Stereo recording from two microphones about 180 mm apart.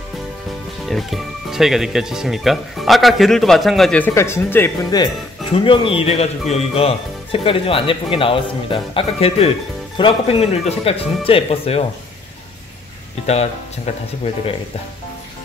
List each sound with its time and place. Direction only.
0.8 s speech: centre (ahead or behind)
4.1 s speech: 15° left (ahead or behind); by 11.8 s 30° left (ahead or behind)